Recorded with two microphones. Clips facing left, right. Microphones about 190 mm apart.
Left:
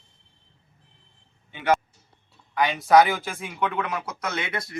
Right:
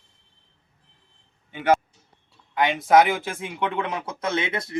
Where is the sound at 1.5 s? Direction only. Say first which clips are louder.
Right 2 dB; 50° right (ahead or behind).